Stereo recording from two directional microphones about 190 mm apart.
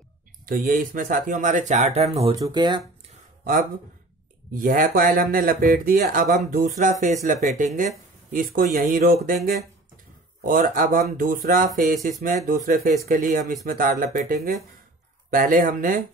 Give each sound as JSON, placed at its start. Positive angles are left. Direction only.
{"t": 0.5, "sound": "speech", "side_deg": -50}
{"t": 2.3, "sound": "speech", "side_deg": -20}
{"t": 4.5, "sound": "speech", "side_deg": -45}
{"t": 10.4, "sound": "speech", "side_deg": -45}